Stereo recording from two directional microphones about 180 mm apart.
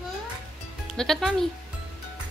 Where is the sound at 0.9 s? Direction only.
Centre (ahead or behind).